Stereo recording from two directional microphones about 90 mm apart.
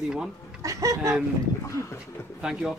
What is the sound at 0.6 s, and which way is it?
Speech, 40° right (ahead or behind).